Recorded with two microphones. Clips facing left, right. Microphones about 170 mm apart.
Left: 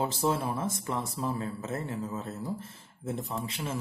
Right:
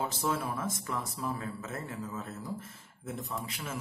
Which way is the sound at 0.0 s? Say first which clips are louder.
Left 4 dB; 25° left (ahead or behind).